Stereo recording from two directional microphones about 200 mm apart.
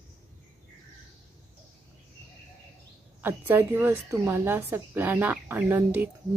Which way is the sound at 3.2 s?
10° right (ahead or behind).